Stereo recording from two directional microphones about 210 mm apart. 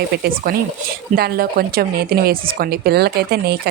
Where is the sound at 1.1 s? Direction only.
45° right (ahead or behind).